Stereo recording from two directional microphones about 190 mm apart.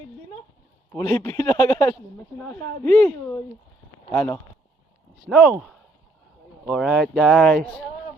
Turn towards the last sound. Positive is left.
turn(degrees=0)  # may be behind; listen again after turning